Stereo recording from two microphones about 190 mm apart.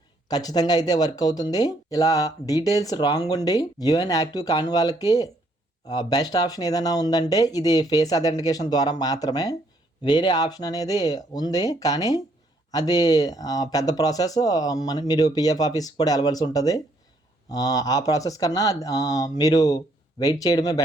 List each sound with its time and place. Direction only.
0.3 s speech: 20° left (ahead or behind)